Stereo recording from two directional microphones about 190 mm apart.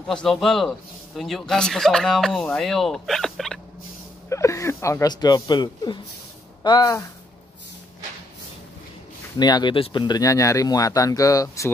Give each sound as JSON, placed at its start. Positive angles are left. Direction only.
{"t": 0.0, "sound": "a man's voice", "side_deg": 5}
{"t": 4.3, "sound": "speech", "side_deg": 15}
{"t": 9.4, "sound": "speech", "side_deg": 20}